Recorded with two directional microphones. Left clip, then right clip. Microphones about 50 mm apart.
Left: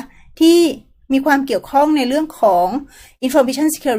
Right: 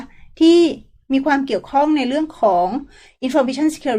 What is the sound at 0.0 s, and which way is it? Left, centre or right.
Speech, left.